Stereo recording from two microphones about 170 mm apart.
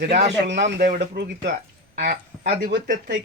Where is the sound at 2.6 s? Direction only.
70° right (ahead or behind).